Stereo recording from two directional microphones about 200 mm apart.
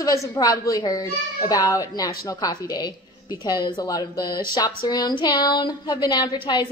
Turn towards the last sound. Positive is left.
turn(degrees=20)  # may be behind; listen again after turning